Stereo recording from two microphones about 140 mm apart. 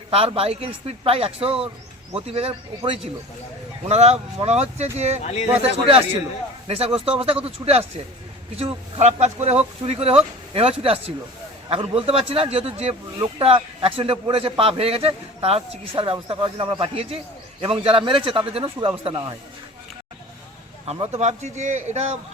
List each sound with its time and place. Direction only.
0.3 s speech: 45° right (ahead or behind)
5.2 s speech: 50° left (ahead or behind)
6.7 s a man's voice: 45° right (ahead or behind)
20.8 s speech: 45° right (ahead or behind)